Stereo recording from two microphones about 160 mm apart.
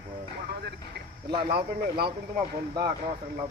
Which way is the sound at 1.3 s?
30° right (ahead or behind).